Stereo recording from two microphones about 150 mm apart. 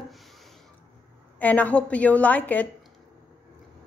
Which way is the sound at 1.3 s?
10° left (ahead or behind).